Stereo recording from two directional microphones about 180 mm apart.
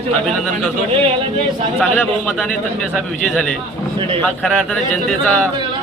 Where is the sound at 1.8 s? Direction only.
5° left (ahead or behind).